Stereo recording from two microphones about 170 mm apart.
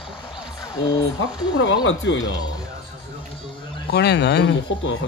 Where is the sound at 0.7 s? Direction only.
20° left (ahead or behind).